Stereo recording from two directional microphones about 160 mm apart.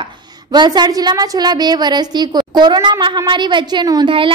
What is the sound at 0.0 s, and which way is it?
A woman's voice, 25° right (ahead or behind).